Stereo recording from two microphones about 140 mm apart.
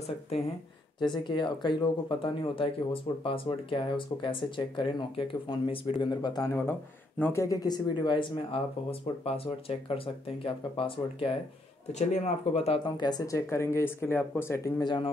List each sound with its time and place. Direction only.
1.0 s speech: 35° left (ahead or behind)
7.2 s speech: 10° left (ahead or behind)
7.4 s speech: 25° left (ahead or behind)
11.9 s speech: 55° left (ahead or behind); by 14.9 s 20° left (ahead or behind)